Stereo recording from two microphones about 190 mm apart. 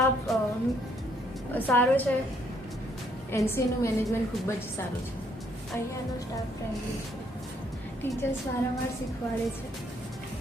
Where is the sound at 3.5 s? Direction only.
15° left (ahead or behind).